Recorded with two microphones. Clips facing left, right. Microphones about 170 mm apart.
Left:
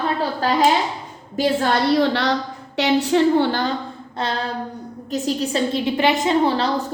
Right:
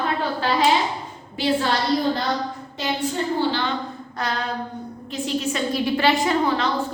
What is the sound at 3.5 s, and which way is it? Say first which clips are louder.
Speech: left 3 dB; 40° left (ahead or behind).